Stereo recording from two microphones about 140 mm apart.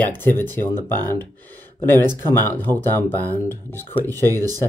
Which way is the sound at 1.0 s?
15° left (ahead or behind).